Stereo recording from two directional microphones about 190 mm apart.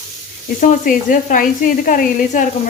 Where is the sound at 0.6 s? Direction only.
45° left (ahead or behind).